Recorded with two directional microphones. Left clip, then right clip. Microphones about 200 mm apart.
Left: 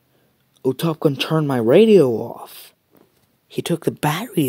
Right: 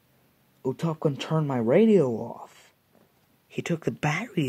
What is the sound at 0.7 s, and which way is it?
Speech, 35° left (ahead or behind).